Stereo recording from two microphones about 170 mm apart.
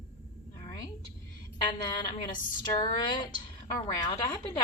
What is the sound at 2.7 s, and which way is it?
A woman's voice, 25° left (ahead or behind).